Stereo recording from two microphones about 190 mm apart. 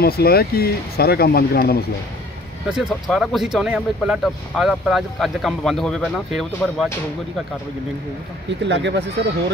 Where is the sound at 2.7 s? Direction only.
Centre (ahead or behind).